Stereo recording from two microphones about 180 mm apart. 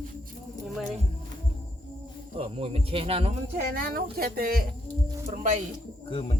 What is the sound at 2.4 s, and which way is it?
Speech, 30° right (ahead or behind).